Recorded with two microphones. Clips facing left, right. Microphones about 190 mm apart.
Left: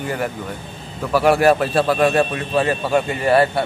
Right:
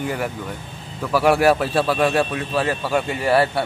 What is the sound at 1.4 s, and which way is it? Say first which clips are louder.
A man's voice: left 2 dB; 10° right (ahead or behind).